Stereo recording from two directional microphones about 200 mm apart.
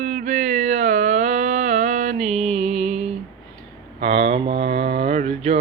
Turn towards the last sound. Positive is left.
turn(degrees=-30)  # may be behind; listen again after turning